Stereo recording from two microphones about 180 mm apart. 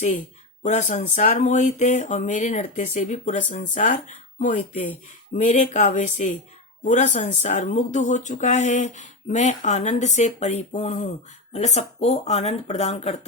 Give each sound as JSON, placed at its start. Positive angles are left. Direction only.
{"t": 0.6, "sound": "speech", "side_deg": 40}